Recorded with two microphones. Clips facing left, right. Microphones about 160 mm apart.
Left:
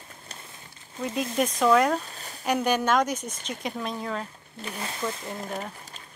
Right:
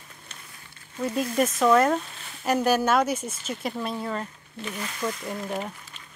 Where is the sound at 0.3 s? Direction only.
35° left (ahead or behind).